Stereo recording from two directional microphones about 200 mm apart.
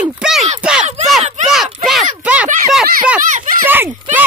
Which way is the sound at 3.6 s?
10° right (ahead or behind).